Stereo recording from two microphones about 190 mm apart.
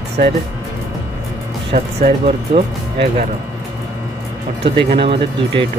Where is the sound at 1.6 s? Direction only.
35° right (ahead or behind).